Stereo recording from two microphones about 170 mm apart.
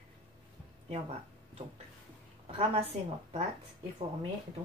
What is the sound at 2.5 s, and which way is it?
Speech, 30° right (ahead or behind).